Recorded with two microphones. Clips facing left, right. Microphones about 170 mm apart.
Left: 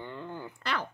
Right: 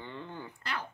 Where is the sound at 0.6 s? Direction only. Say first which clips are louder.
Left 5 dB; 90° left.